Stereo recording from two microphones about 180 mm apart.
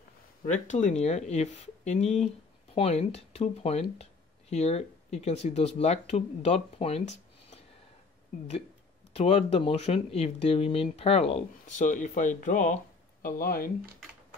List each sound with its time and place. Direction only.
0.5 s speech: 40° left (ahead or behind)
9.1 s speech: 35° left (ahead or behind)
13.2 s speech: 55° left (ahead or behind)